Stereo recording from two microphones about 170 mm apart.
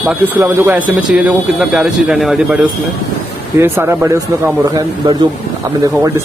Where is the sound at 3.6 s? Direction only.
15° right (ahead or behind).